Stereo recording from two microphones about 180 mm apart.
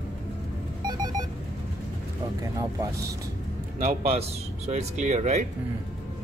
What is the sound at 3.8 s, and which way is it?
Speech, 50° right (ahead or behind).